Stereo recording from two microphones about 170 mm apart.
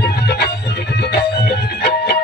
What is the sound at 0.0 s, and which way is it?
Music, 70° left (ahead or behind).